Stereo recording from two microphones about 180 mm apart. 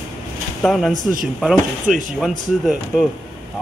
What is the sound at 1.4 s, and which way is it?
Speech, 5° right (ahead or behind).